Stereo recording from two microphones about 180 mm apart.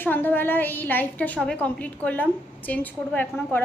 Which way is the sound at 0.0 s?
10° left (ahead or behind).